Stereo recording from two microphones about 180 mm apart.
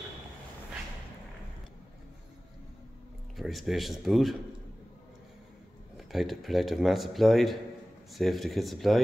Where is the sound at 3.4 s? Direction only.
Centre (ahead or behind).